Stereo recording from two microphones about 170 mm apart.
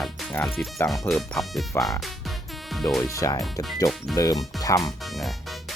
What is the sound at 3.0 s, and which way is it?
Speech, 20° left (ahead or behind).